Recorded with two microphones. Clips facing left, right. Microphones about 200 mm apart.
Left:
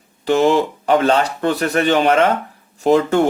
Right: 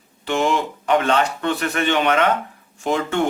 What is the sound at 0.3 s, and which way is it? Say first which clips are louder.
Speech: left 6 dB; 35° left (ahead or behind).